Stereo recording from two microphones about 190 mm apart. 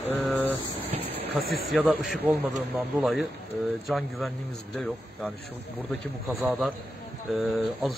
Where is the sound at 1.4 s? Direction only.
50° right (ahead or behind).